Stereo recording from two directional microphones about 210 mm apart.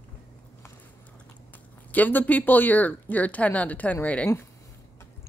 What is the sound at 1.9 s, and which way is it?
Speech, 10° left (ahead or behind).